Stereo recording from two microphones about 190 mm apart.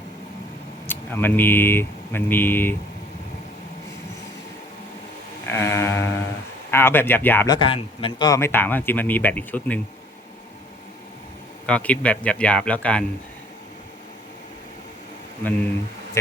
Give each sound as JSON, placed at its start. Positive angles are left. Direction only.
{"t": 0.9, "sound": "speech", "side_deg": 10}
{"t": 5.5, "sound": "a sound", "side_deg": 10}
{"t": 6.7, "sound": "speech", "side_deg": 10}
{"t": 7.4, "sound": "a man's voice", "side_deg": 25}
{"t": 8.3, "sound": "speech", "side_deg": 15}
{"t": 11.6, "sound": "speech", "side_deg": 5}